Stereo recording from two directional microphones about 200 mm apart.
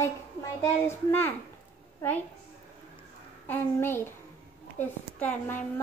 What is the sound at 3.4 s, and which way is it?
Speech, 10° left (ahead or behind).